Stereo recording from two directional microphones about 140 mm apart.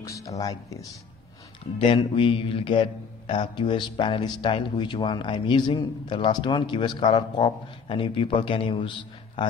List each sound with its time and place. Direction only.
0.0 s speech: 25° left (ahead or behind)
1.8 s a man's voice: 40° left (ahead or behind)